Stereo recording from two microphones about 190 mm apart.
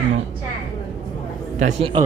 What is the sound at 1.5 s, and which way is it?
Speech, 40° right (ahead or behind).